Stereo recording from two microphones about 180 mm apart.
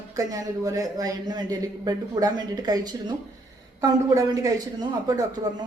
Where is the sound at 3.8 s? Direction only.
20° right (ahead or behind).